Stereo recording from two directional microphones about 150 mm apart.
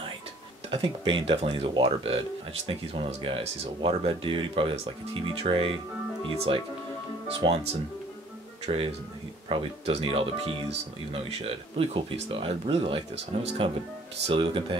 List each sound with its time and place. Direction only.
0.7 s speech: 35° right (ahead or behind)